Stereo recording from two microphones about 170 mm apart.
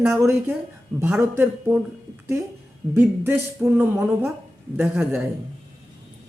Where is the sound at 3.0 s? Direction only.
15° right (ahead or behind).